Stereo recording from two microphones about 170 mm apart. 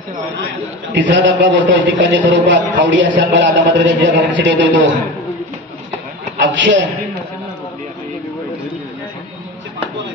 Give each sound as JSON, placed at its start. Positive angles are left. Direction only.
{"t": 0.9, "sound": "a man's voice", "side_deg": -90}
{"t": 6.4, "sound": "a man's voice", "side_deg": -90}